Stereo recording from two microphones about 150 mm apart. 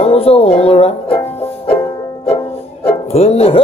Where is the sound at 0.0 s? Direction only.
40° left (ahead or behind).